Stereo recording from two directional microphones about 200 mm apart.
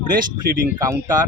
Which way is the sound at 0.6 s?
15° right (ahead or behind).